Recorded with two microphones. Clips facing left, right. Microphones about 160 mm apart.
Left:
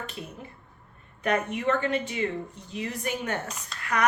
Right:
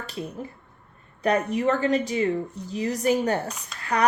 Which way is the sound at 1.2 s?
35° right (ahead or behind).